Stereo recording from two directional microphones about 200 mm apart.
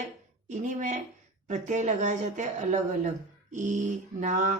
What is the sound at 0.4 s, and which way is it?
A woman's voice, 40° right (ahead or behind).